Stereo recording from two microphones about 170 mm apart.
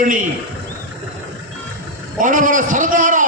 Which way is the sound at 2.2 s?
50° right (ahead or behind).